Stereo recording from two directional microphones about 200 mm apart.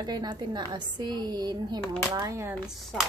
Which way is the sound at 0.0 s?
20° right (ahead or behind).